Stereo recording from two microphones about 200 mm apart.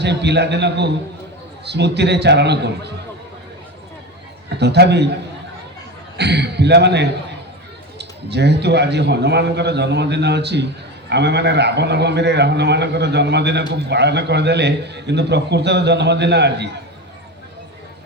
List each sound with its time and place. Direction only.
0.0 s a man's voice: 60° right (ahead or behind)
4.4 s a man's voice: 55° right (ahead or behind)
6.1 s a man's voice: 55° right (ahead or behind)